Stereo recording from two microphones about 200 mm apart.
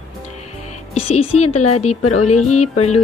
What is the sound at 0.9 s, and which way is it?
A woman's voice, 30° left (ahead or behind).